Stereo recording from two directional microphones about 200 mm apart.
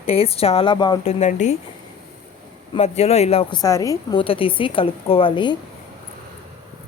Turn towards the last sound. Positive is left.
turn(degrees=25)  # may be behind; listen again after turning